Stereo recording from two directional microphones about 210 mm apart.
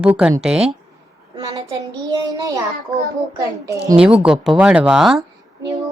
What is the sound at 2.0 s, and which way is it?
Speech, 20° right (ahead or behind).